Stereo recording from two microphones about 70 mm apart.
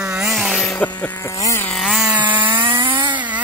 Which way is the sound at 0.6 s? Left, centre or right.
Centre.